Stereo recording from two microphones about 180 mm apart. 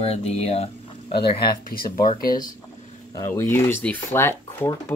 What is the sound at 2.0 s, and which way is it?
Speech, 45° left (ahead or behind).